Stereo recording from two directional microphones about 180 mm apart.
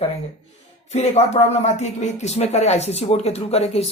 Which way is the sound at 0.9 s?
35° left (ahead or behind).